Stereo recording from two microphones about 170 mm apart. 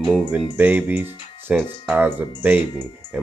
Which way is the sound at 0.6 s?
10° right (ahead or behind).